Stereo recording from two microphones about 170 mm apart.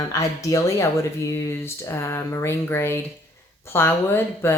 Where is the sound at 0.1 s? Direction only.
20° left (ahead or behind).